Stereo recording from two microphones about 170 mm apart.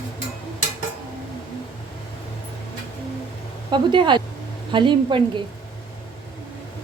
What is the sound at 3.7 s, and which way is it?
A woman's voice, 25° right (ahead or behind).